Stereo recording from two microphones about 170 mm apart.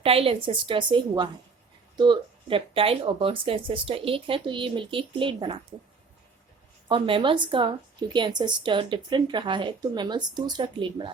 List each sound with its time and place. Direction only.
0.0 s speech: 35° right (ahead or behind)
6.8 s speech: 30° right (ahead or behind)